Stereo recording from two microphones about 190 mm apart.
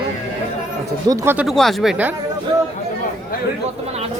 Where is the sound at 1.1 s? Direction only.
15° right (ahead or behind).